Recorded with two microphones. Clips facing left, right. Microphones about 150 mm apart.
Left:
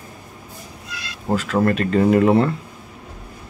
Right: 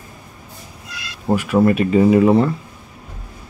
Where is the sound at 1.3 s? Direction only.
15° right (ahead or behind).